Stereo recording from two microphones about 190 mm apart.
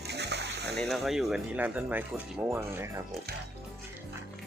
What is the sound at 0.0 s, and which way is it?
Splash, 60° right (ahead or behind).